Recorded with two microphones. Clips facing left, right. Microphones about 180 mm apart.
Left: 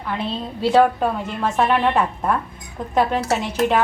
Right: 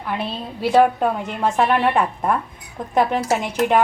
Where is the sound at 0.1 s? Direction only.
15° right (ahead or behind).